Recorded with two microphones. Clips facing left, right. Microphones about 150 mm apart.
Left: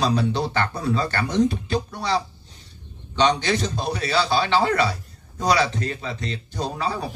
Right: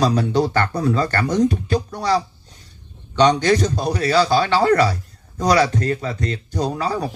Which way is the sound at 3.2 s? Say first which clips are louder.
Right 5 dB; 45° right (ahead or behind).